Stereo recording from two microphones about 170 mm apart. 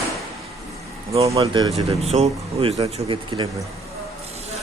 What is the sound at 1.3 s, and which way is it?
Speech, 20° right (ahead or behind).